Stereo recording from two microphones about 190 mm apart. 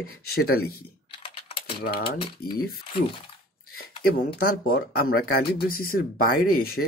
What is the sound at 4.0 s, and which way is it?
Speech, 50° left (ahead or behind).